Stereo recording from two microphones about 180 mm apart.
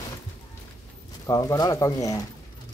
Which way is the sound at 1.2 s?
20° left (ahead or behind).